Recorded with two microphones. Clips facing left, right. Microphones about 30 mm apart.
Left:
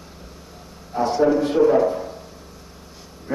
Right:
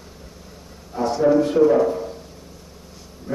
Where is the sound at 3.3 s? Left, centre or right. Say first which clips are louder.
Right 2 dB; centre.